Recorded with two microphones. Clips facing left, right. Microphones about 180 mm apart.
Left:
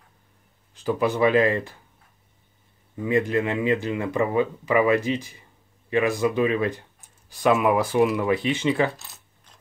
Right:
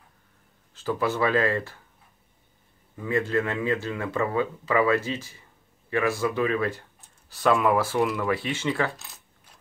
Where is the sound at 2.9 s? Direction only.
15° left (ahead or behind).